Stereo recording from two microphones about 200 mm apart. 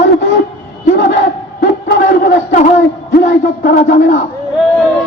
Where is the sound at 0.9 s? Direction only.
60° left (ahead or behind).